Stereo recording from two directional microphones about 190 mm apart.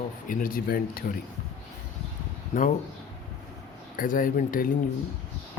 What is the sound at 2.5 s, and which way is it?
Speech, 40° left (ahead or behind).